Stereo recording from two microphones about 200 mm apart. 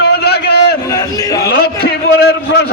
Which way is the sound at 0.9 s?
15° left (ahead or behind).